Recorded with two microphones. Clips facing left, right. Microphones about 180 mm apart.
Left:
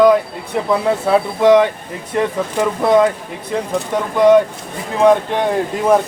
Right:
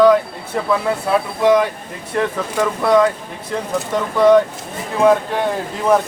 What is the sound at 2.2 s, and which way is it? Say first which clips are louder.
Speech: left 1 dB; 20° left (ahead or behind).